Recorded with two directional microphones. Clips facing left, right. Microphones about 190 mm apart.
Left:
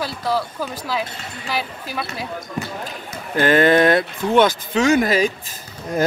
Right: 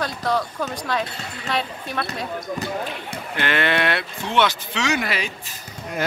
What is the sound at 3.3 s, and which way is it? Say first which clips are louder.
Speech: left 8 dB; 40° left (ahead or behind).